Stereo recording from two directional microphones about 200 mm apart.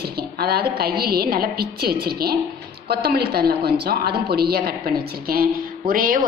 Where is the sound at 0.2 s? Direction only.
50° right (ahead or behind).